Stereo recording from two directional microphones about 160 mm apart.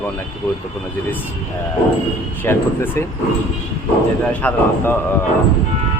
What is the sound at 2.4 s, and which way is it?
Speech, 15° left (ahead or behind).